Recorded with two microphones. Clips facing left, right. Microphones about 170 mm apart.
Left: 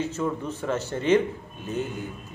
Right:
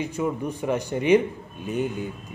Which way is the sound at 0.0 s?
15° right (ahead or behind).